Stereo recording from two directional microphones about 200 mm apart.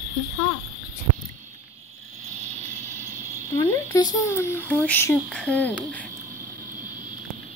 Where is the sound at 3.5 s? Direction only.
15° left (ahead or behind).